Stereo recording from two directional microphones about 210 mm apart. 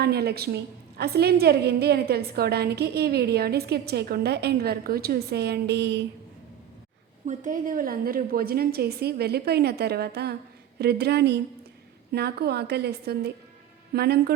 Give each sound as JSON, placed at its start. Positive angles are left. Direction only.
{"t": 0.0, "sound": "a woman's voice", "side_deg": -50}
{"t": 7.3, "sound": "a woman's voice", "side_deg": -40}